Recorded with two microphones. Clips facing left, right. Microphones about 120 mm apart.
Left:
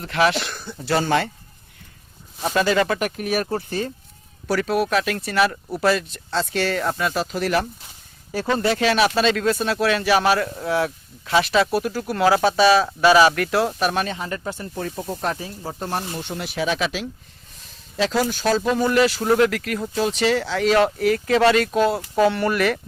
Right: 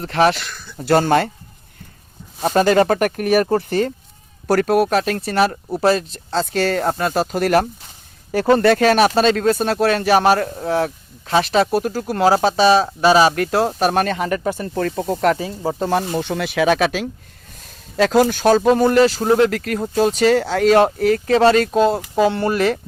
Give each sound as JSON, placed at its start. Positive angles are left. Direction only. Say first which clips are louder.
{"t": 0.0, "sound": "speech", "louder": "right 4 dB", "side_deg": -40}
{"t": 0.3, "sound": "speech", "louder": "left 6 dB", "side_deg": 45}
{"t": 0.8, "sound": "speech", "louder": "right 5 dB", "side_deg": -50}
{"t": 2.4, "sound": "speech", "louder": "right 5 dB", "side_deg": -45}
{"t": 4.4, "sound": "speech", "louder": "right 6 dB", "side_deg": -45}
{"t": 14.1, "sound": "speech", "louder": "right 8 dB", "side_deg": -85}
{"t": 15.2, "sound": "speech", "louder": "right 11 dB", "side_deg": -90}